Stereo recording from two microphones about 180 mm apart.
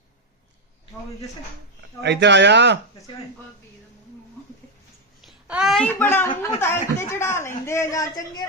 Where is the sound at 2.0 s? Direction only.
70° right (ahead or behind).